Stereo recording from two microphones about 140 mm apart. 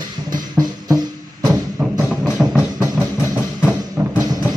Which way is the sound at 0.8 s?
25° right (ahead or behind).